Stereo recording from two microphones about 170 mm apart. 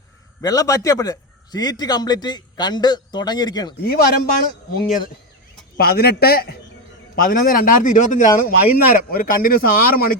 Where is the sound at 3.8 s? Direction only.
60° left (ahead or behind).